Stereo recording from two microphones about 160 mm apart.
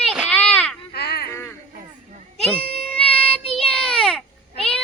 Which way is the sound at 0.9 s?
90° left.